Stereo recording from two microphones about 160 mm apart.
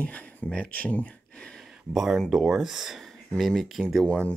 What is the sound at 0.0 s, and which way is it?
Speech, 10° left (ahead or behind).